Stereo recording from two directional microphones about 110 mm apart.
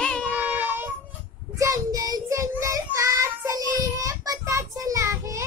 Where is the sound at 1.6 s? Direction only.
30° right (ahead or behind).